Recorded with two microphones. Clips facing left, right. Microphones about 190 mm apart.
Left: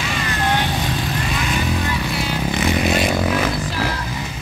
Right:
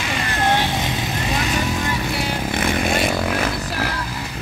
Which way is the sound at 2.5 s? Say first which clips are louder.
Left 2 dB; 50° right (ahead or behind).